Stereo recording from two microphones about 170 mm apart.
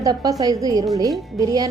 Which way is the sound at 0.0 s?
20° right (ahead or behind).